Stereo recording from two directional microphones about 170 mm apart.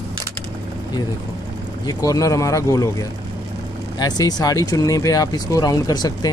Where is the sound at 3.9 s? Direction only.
25° left (ahead or behind).